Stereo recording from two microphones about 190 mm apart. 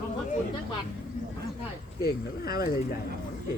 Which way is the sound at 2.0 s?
55° left (ahead or behind).